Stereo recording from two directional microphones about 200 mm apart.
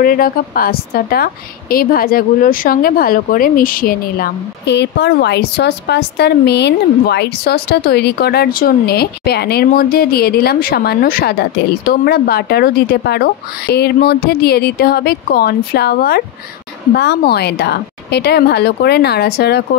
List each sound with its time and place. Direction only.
0.0 s a woman's voice: 45° left (ahead or behind)